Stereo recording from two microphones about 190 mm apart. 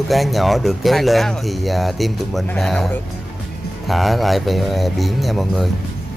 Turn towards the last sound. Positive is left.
turn(degrees=0)  # may be behind; listen again after turning